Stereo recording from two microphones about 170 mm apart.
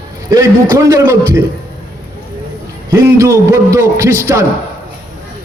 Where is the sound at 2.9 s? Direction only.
15° right (ahead or behind).